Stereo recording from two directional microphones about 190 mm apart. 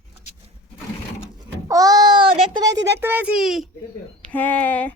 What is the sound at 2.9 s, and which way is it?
Speech, 10° right (ahead or behind).